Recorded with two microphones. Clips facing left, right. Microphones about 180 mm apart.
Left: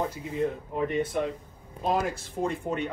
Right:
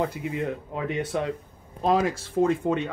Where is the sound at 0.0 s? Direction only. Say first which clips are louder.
Right 1 dB; 75° right (ahead or behind).